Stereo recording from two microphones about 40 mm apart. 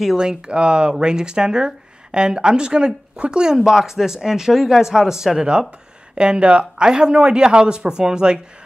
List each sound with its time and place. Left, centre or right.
0.0 s speech: centre
6.1 s speech: right